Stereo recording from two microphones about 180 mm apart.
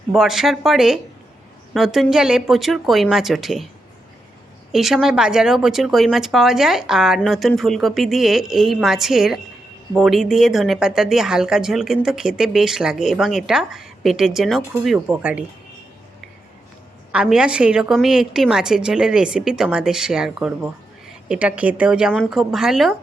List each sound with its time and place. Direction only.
0.1 s speech: centre (ahead or behind)
4.7 s speech: centre (ahead or behind)
17.1 s speech: 5° right (ahead or behind)